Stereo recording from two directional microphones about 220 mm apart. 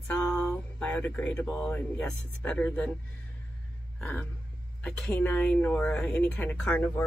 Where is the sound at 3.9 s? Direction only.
5° left (ahead or behind).